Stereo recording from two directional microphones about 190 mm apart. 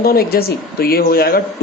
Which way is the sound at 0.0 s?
50° left (ahead or behind).